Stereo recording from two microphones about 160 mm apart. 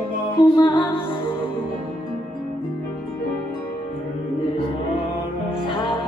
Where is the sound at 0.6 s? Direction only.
30° left (ahead or behind).